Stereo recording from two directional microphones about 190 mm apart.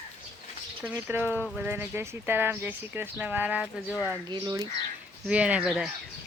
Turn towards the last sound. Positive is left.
turn(degrees=0)  # may be behind; listen again after turning